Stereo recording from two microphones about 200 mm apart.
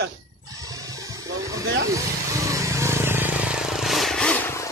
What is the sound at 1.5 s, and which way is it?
Vehicle, 15° right (ahead or behind).